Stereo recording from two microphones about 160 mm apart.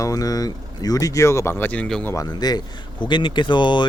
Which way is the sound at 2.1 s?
25° left (ahead or behind).